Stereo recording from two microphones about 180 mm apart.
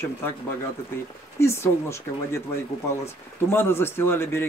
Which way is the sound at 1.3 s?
15° left (ahead or behind).